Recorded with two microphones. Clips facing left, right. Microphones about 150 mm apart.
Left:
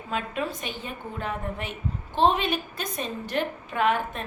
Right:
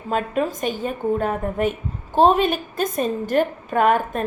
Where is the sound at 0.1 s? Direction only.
45° right (ahead or behind).